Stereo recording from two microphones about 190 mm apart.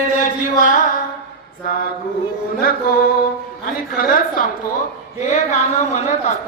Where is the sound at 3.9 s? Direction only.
50° left (ahead or behind).